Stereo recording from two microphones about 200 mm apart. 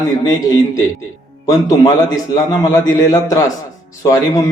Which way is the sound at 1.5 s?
15° left (ahead or behind).